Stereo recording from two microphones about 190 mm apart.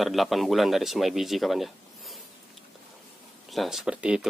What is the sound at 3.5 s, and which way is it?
Speech, centre (ahead or behind).